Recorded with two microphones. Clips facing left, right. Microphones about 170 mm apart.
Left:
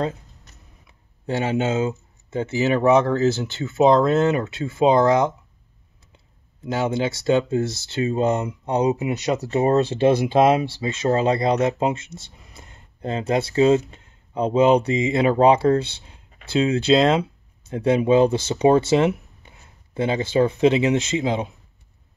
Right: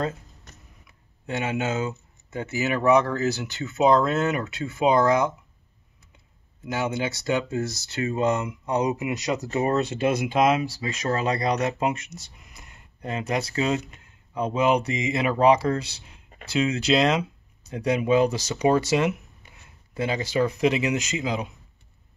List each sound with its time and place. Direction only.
0.8 s speech: 30° left (ahead or behind)
6.6 s speech: 25° left (ahead or behind)